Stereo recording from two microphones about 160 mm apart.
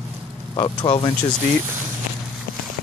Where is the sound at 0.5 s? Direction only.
30° left (ahead or behind).